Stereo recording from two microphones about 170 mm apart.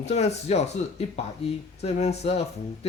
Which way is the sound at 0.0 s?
40° left (ahead or behind).